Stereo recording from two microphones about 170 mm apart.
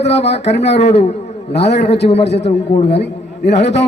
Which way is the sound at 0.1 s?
40° left (ahead or behind).